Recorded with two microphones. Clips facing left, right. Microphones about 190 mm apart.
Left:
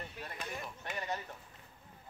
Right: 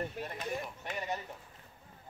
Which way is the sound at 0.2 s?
45° right (ahead or behind).